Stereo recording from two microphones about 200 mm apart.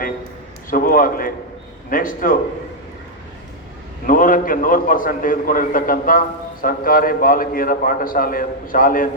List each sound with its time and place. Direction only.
0.7 s a man's voice: 45° left (ahead or behind)
4.0 s a man's voice: 45° left (ahead or behind)